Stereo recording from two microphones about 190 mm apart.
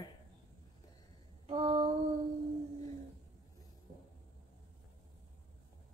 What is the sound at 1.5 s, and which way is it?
Female singing, 30° right (ahead or behind).